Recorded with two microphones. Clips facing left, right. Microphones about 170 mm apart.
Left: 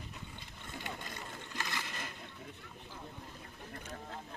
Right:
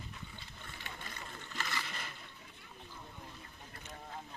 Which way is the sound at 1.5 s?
15° left (ahead or behind).